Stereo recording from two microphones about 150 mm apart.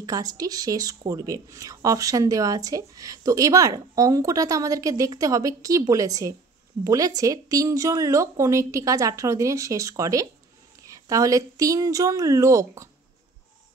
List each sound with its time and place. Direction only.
0.0 s a woman's voice: 25° right (ahead or behind)